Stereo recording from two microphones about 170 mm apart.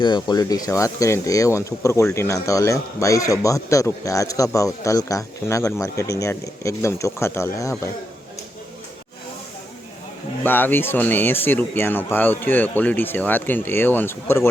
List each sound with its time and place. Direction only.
0.0 s speech: 25° left (ahead or behind)
10.4 s speech: 10° left (ahead or behind)